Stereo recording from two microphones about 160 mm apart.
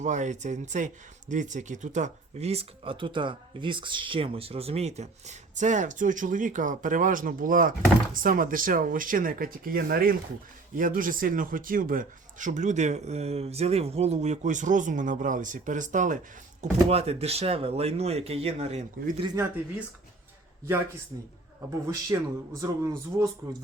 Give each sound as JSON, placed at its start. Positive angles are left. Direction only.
{"t": 0.0, "sound": "speech", "side_deg": -50}
{"t": 16.9, "sound": "speech", "side_deg": -40}
{"t": 21.7, "sound": "a man's voice", "side_deg": -20}